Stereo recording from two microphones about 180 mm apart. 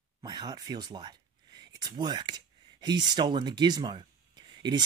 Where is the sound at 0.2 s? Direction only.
25° right (ahead or behind).